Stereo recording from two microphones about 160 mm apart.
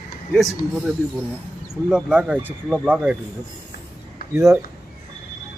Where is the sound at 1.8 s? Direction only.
5° right (ahead or behind).